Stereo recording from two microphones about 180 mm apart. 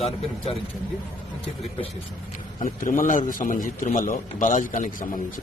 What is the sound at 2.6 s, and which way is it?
A man's voice, 50° left (ahead or behind).